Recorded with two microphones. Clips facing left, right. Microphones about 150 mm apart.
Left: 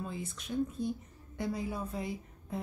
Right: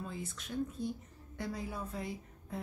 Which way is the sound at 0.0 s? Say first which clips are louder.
Left 3 dB; 15° left (ahead or behind).